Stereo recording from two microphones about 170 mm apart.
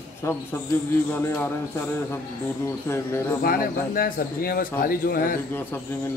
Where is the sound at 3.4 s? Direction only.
60° left (ahead or behind).